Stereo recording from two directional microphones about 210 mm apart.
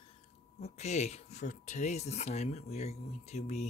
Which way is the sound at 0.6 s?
30° left (ahead or behind).